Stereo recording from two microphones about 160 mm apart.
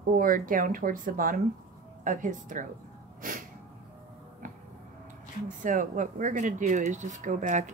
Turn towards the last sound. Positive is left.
turn(degrees=-50)  # may be behind; listen again after turning